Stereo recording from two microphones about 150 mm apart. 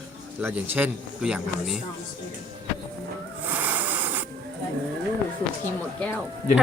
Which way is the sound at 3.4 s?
10° right (ahead or behind).